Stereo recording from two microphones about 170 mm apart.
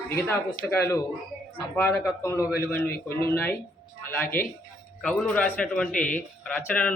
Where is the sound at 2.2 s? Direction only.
15° left (ahead or behind).